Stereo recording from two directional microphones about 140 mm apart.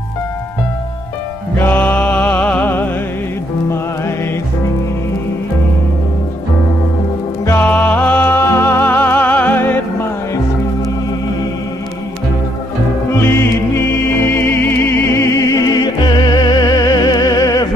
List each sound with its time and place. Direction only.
1.6 s music: 15° left (ahead or behind)
7.4 s music: 15° left (ahead or behind)
13.1 s music: 20° left (ahead or behind)